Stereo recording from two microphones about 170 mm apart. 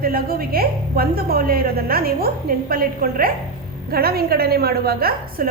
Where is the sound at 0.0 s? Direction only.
60° right (ahead or behind).